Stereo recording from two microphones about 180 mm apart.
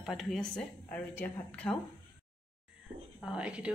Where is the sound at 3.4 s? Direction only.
5° right (ahead or behind).